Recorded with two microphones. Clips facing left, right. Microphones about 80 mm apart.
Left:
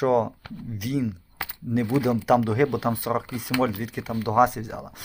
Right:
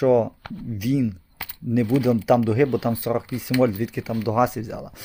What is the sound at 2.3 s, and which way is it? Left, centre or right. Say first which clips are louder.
Speech: right 2 dB; left.